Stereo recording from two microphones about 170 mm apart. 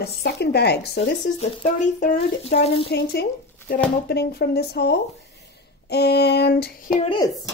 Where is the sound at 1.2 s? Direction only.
45° left (ahead or behind).